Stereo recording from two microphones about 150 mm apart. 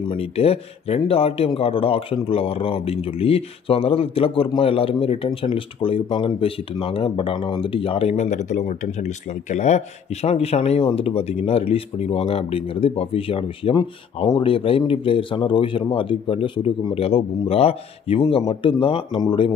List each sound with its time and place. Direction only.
0.1 s speech: 40° left (ahead or behind)